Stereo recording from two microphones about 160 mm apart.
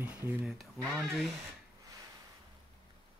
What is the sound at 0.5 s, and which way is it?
Speech, 5° left (ahead or behind).